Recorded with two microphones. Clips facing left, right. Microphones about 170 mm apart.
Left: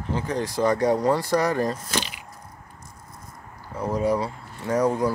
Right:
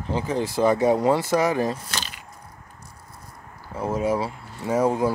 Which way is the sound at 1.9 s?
15° left (ahead or behind).